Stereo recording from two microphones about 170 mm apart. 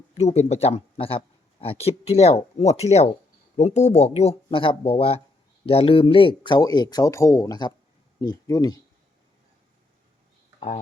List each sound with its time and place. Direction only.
0.1 s speech: 40° left (ahead or behind); by 8.7 s 25° left (ahead or behind)